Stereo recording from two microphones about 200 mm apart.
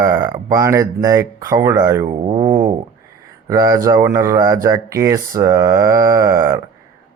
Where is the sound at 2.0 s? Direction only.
30° right (ahead or behind).